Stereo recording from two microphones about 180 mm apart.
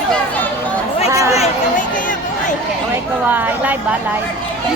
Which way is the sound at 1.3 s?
40° left (ahead or behind).